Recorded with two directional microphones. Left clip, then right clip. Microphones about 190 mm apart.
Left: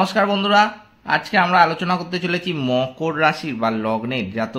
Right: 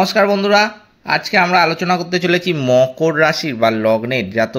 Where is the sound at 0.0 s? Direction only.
10° right (ahead or behind).